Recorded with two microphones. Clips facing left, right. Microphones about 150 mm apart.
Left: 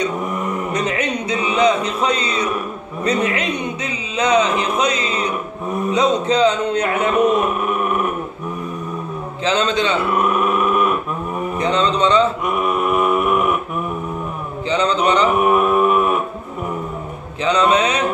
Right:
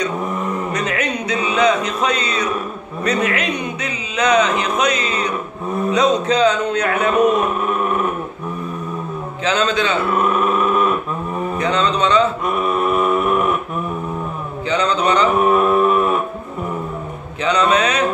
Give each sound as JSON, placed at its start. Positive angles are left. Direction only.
{"t": 0.7, "sound": "music", "side_deg": 30}
{"t": 3.0, "sound": "a man's voice", "side_deg": 25}
{"t": 9.4, "sound": "mantra", "side_deg": 30}
{"t": 10.1, "sound": "speech", "side_deg": 15}
{"t": 11.5, "sound": "mantra", "side_deg": 30}
{"t": 12.4, "sound": "mantra", "side_deg": 15}
{"t": 14.7, "sound": "speech", "side_deg": 30}
{"t": 15.3, "sound": "mantra", "side_deg": 15}
{"t": 17.5, "sound": "mantra", "side_deg": 30}